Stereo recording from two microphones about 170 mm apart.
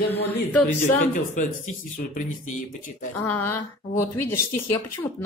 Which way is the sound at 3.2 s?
10° left (ahead or behind).